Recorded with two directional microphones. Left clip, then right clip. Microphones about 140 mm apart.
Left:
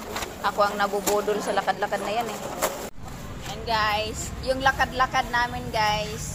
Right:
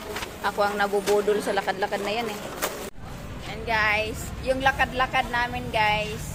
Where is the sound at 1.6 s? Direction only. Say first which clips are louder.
Left 1 dB; 25° right (ahead or behind).